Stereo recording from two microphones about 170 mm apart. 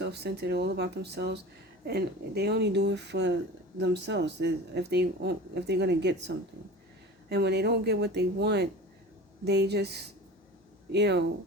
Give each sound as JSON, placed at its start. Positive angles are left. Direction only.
{"t": 0.0, "sound": "speech", "side_deg": -75}
{"t": 7.3, "sound": "speech", "side_deg": -75}